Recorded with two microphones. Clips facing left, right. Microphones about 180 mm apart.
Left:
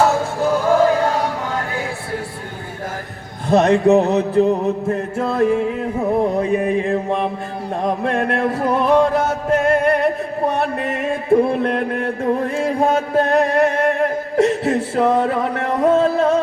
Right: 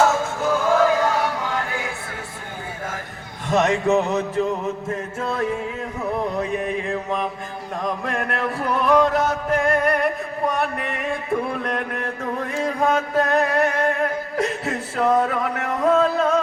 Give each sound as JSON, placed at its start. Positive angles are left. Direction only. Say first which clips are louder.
{"t": 0.3, "sound": "a sound", "louder": "left 4 dB", "side_deg": 35}
{"t": 3.4, "sound": "music", "louder": "left 6 dB", "side_deg": 35}
{"t": 11.3, "sound": "chant", "louder": "left 11 dB", "side_deg": 30}